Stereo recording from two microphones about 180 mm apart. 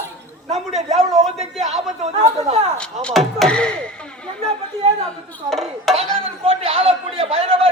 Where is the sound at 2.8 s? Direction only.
5° left (ahead or behind).